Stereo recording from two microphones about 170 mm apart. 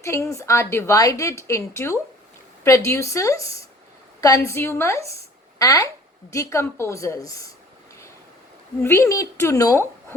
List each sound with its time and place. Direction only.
0.0 s a woman's voice: 15° left (ahead or behind)
8.8 s a woman's voice: 15° left (ahead or behind)